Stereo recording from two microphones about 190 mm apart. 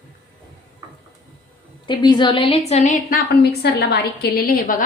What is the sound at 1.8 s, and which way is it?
A woman's voice, 25° left (ahead or behind).